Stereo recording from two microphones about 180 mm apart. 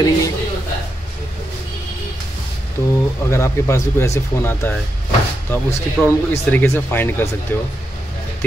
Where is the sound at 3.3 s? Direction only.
15° left (ahead or behind).